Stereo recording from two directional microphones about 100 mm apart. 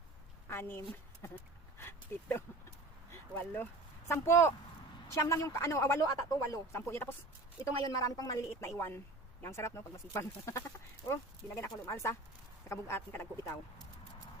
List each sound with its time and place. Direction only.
0.5 s a woman's voice: 25° left (ahead or behind)
1.8 s a sound: 25° left (ahead or behind)
3.1 s speech: 20° left (ahead or behind)
7.9 s a woman's voice: 35° left (ahead or behind)